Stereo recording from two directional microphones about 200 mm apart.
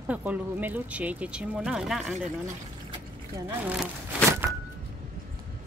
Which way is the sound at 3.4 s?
10° right (ahead or behind).